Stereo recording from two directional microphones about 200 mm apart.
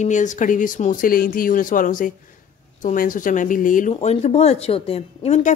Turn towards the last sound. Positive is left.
turn(degrees=30)  # may be behind; listen again after turning